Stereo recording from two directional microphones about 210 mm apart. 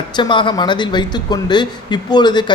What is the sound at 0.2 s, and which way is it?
Speech, 20° left (ahead or behind).